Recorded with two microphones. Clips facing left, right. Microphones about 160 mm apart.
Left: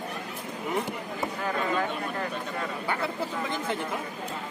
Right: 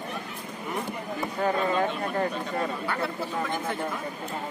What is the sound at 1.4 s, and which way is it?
Speech, 35° right (ahead or behind).